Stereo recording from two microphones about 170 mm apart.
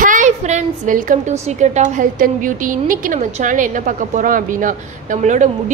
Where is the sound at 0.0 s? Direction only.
50° right (ahead or behind).